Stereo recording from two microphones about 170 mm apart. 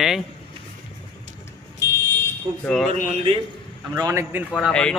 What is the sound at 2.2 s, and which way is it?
Speech, 5° left (ahead or behind).